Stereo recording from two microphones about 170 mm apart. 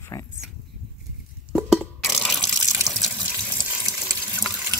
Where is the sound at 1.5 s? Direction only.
Centre (ahead or behind).